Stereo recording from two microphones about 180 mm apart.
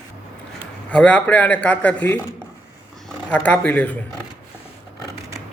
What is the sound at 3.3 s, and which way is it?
Speech, 10° left (ahead or behind).